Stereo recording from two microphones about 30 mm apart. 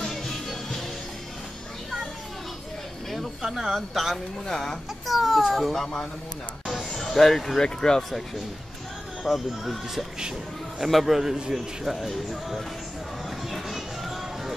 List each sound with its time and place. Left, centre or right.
0.0 s music: centre
3.1 s a sound: centre
3.7 s speech: centre
4.1 s speech: centre
5.0 s baby cry: centre
5.5 s speech: centre
7.0 s speech: centre
7.6 s speech: left
9.2 s speech: centre
13.5 s a sound: centre